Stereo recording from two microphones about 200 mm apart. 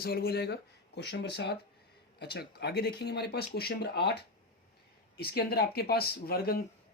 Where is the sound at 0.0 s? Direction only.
50° left (ahead or behind).